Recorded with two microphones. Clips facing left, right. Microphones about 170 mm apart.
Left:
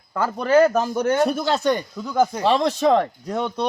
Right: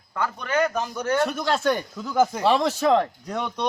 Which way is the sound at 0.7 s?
50° left (ahead or behind).